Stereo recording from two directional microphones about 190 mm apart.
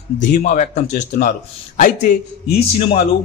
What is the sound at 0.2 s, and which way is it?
Speech, 40° left (ahead or behind).